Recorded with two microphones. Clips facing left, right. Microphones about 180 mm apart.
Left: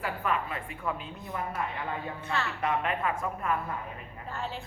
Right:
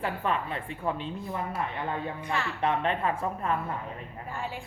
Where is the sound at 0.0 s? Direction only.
30° right (ahead or behind).